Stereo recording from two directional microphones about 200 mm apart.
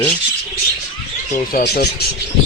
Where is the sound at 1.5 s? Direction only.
50° left (ahead or behind).